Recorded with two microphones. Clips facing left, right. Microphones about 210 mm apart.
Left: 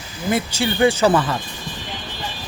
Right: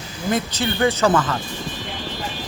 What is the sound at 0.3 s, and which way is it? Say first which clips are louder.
Speech: left 1 dB; 10° left (ahead or behind).